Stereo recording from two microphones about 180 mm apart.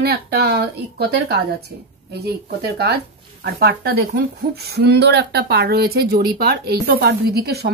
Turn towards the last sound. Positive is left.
turn(degrees=-65)  # may be behind; listen again after turning